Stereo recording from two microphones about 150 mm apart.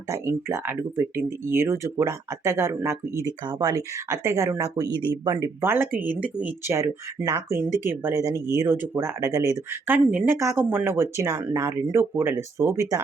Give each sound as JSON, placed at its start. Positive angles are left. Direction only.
{"t": 0.1, "sound": "speech", "side_deg": -15}